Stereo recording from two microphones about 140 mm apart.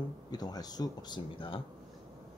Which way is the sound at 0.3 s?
30° left (ahead or behind).